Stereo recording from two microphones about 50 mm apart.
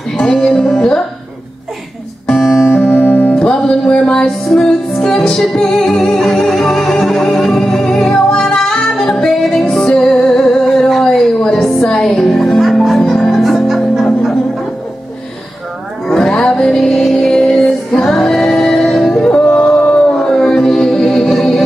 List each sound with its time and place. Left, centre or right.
0.2 s music: centre
2.2 s music: centre
2.9 s music: left
3.3 s music: centre
11.1 s a sound: centre
11.6 s music: centre
16.1 s music: centre